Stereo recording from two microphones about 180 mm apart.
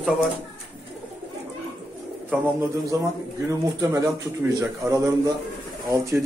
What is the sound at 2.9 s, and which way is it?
A man's voice, 15° right (ahead or behind).